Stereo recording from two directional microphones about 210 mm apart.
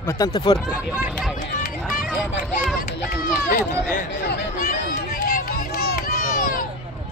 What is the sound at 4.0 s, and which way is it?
Chatter, 50° left (ahead or behind).